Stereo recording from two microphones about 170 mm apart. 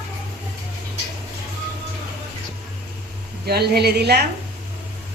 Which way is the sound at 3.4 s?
70° right (ahead or behind).